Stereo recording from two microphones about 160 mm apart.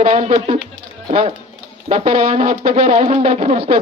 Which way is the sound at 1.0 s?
35° right (ahead or behind).